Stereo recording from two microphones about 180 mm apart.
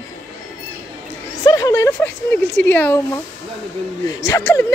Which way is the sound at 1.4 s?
20° left (ahead or behind).